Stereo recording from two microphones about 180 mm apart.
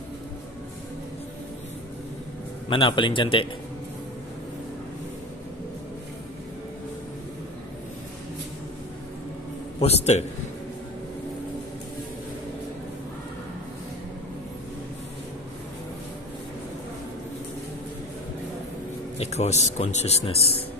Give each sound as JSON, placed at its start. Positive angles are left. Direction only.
{"t": 2.7, "sound": "a man's voice", "side_deg": 30}
{"t": 9.8, "sound": "speech", "side_deg": 35}
{"t": 19.1, "sound": "speech", "side_deg": 35}